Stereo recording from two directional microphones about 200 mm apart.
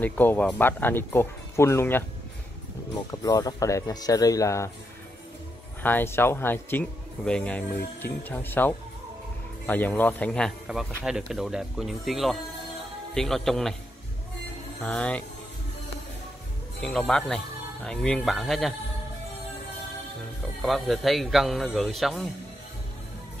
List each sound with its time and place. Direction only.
0.0 s speech: 10° left (ahead or behind)
3.1 s speech: 20° left (ahead or behind)
5.8 s speech: 10° left (ahead or behind)
14.8 s speech: 5° left (ahead or behind)
16.8 s speech: 5° left (ahead or behind)
20.6 s speech: centre (ahead or behind)